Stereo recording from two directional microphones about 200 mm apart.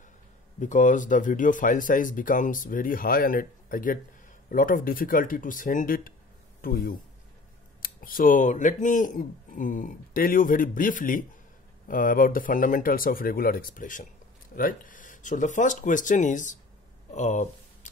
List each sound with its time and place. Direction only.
0.6 s speech: 40° left (ahead or behind)